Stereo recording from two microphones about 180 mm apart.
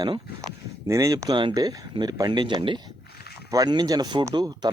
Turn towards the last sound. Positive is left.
turn(degrees=-25)  # may be behind; listen again after turning